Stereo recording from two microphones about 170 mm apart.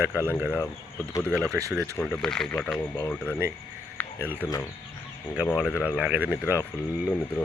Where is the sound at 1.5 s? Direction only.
20° right (ahead or behind).